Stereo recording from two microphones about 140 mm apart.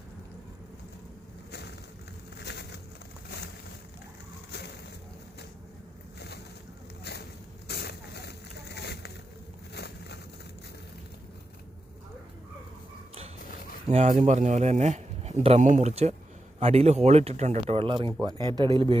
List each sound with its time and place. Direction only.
13.9 s speech: 55° right (ahead or behind); by 18.9 s 35° right (ahead or behind)